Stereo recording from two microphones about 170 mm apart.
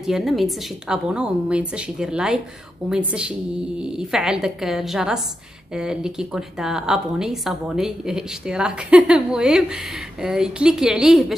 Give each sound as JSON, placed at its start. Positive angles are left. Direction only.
{"t": 0.0, "sound": "a woman's voice", "side_deg": 0}